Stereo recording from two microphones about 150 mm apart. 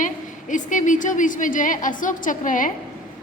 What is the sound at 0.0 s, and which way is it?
A woman's voice, 60° left (ahead or behind).